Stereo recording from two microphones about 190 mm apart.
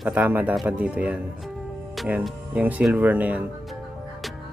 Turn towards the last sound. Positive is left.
turn(degrees=-10)  # may be behind; listen again after turning